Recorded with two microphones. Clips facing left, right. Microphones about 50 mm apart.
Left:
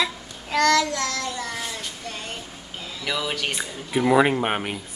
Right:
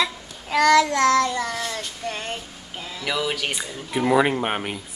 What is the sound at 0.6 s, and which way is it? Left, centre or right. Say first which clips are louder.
Child singing: right 3 dB; centre.